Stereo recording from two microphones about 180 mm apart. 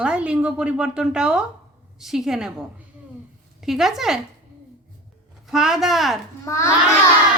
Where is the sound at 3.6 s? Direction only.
Centre (ahead or behind).